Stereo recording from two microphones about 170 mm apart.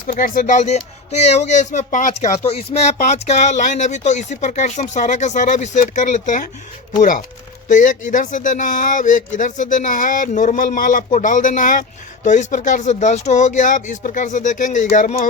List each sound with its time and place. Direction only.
0.1 s speech: 55° left (ahead or behind)
7.7 s speech: 50° left (ahead or behind)